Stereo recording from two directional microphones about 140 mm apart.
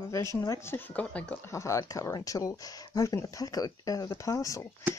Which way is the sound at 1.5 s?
20° left (ahead or behind).